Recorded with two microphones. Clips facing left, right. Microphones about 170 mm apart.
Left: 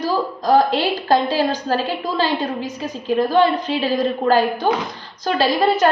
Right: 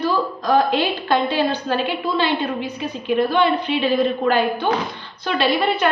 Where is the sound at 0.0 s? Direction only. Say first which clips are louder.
Even; 35° left (ahead or behind).